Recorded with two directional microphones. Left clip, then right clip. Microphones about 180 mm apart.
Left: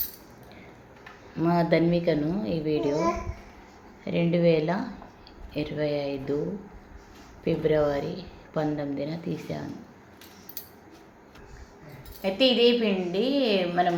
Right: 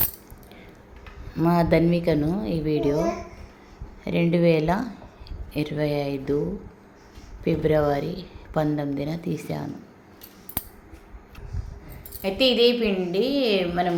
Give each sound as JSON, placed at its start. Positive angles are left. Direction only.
{"t": 1.3, "sound": "a woman's voice", "side_deg": -20}
{"t": 4.0, "sound": "a woman's voice", "side_deg": -25}
{"t": 7.4, "sound": "a woman's voice", "side_deg": -20}
{"t": 12.2, "sound": "a woman's voice", "side_deg": -15}